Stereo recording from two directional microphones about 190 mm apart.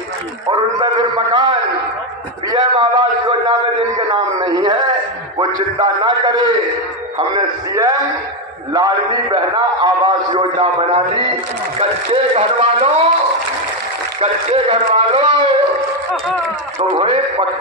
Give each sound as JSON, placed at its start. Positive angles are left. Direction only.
{"t": 0.5, "sound": "a man's voice", "side_deg": -25}
{"t": 2.5, "sound": "a sound", "side_deg": -20}
{"t": 5.4, "sound": "a man's voice", "side_deg": -25}
{"t": 14.2, "sound": "a man's voice", "side_deg": -30}
{"t": 17.0, "sound": "a man's voice", "side_deg": -30}